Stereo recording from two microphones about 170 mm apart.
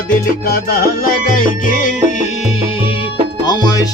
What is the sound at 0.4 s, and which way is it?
Music, 65° left (ahead or behind).